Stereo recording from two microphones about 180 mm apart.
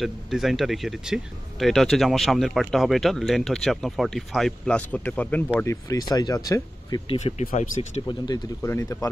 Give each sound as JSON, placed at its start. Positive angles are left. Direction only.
{"t": 0.0, "sound": "speech", "side_deg": 0}
{"t": 8.1, "sound": "speech", "side_deg": 20}